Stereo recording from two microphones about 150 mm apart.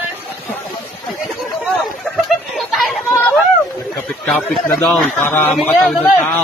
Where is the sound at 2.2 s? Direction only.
Centre (ahead or behind).